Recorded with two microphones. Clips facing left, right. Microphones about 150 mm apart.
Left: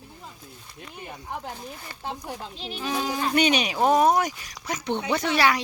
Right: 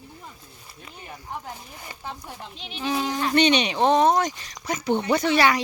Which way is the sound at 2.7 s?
Centre (ahead or behind).